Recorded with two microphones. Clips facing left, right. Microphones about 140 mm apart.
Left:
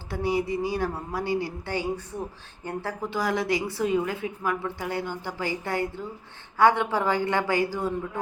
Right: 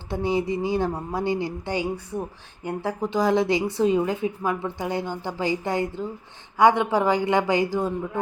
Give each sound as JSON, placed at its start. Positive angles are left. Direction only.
{"t": 0.1, "sound": "a woman's voice", "side_deg": -20}